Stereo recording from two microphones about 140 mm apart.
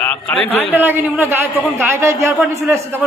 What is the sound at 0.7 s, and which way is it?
A man's voice, 15° right (ahead or behind).